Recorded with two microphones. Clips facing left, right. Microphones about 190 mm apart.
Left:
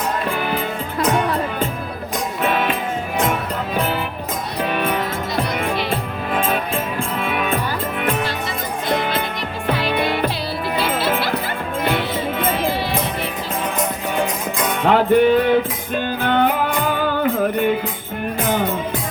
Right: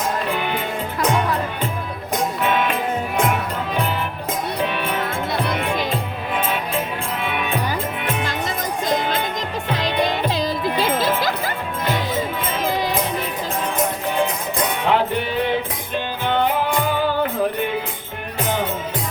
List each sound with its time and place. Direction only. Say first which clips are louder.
10.8 s music: left 1 dB; 45° right (ahead or behind)
14.8 s music: left 9 dB; 50° left (ahead or behind)